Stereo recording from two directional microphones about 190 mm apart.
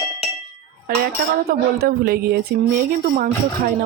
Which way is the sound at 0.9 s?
50° right (ahead or behind).